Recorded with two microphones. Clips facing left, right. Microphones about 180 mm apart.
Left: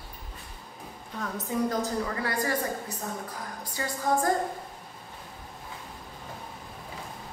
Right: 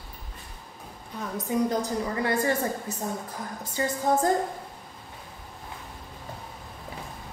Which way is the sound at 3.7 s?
20° right (ahead or behind).